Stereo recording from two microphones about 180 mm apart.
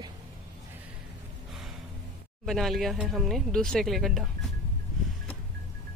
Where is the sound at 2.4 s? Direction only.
Centre (ahead or behind).